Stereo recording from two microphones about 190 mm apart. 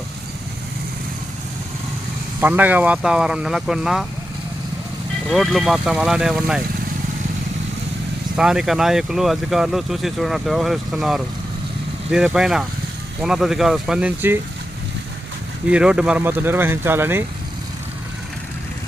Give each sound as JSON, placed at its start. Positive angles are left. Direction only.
{"t": 2.4, "sound": "speech", "side_deg": -10}
{"t": 5.3, "sound": "speech", "side_deg": 0}
{"t": 8.4, "sound": "speech", "side_deg": -5}
{"t": 15.7, "sound": "speech", "side_deg": -5}